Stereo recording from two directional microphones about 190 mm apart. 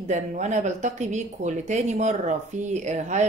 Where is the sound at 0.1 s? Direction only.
40° right (ahead or behind).